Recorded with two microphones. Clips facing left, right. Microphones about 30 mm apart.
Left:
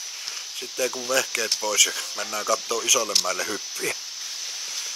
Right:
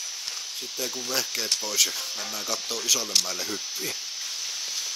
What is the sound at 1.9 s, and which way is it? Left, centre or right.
Speech, centre.